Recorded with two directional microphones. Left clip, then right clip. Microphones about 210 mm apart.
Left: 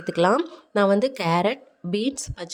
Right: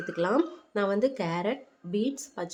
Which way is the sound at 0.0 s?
40° left (ahead or behind).